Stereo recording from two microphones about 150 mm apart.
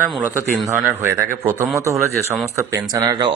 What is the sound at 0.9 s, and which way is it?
Speech, 15° right (ahead or behind).